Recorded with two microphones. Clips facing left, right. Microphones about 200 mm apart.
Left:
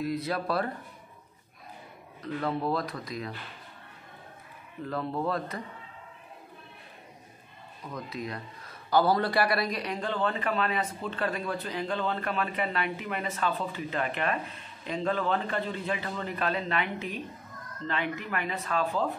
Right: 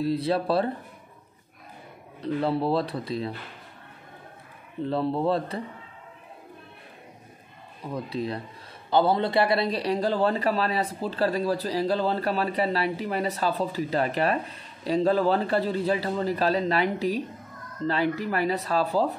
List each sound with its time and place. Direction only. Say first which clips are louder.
0.0 s a man's voice: right 6 dB; 30° right (ahead or behind)
2.2 s a man's voice: right 5 dB; 30° right (ahead or behind)
4.8 s speech: right 6 dB; 30° right (ahead or behind)
7.8 s a man's voice: right 6 dB; 30° right (ahead or behind)